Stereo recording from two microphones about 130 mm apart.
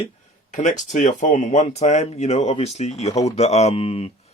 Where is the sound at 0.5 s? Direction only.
75° left (ahead or behind).